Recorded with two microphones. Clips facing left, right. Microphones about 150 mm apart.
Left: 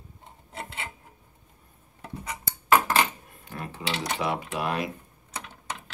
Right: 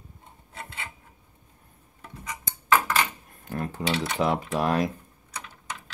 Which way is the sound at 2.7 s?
25° left (ahead or behind).